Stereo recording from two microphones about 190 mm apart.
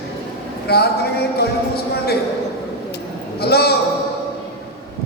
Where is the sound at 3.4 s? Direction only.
55° left (ahead or behind).